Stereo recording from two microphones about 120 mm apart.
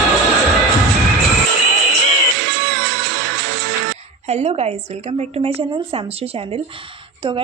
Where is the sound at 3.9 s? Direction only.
65° right (ahead or behind).